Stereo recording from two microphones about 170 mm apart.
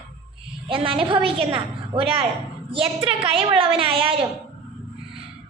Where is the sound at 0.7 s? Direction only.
30° right (ahead or behind).